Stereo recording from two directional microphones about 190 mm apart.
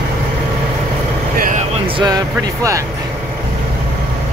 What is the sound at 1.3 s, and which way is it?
Vehicle, 50° right (ahead or behind).